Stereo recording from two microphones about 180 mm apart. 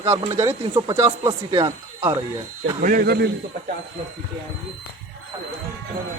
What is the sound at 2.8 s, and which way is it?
Speech, 55° right (ahead or behind).